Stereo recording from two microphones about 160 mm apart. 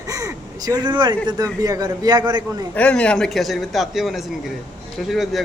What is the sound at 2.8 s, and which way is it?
A man's voice, 10° left (ahead or behind).